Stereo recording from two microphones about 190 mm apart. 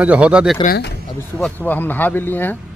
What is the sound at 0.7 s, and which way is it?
Speech, 60° left (ahead or behind).